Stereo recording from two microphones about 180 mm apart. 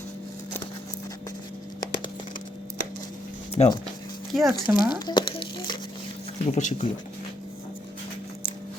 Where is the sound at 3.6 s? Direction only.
30° left (ahead or behind).